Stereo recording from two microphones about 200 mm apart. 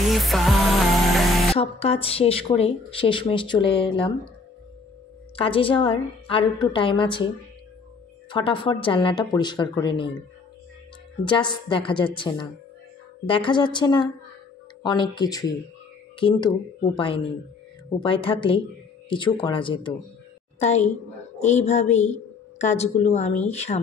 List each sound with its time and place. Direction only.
0.0 s music: centre (ahead or behind)
1.5 s speech: 30° left (ahead or behind)
5.3 s speech: 25° left (ahead or behind)
8.3 s speech: 25° left (ahead or behind)
11.2 s a woman's voice: 25° left (ahead or behind)